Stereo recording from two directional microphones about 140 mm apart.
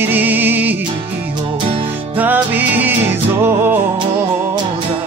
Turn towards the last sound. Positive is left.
turn(degrees=-15)  # may be behind; listen again after turning